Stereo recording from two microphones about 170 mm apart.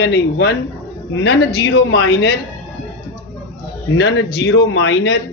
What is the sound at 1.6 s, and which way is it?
Speech, 90° left.